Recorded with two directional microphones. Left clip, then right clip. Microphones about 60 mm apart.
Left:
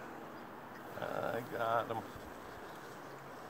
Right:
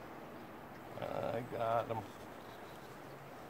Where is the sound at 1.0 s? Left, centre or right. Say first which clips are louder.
Left 1 dB; left.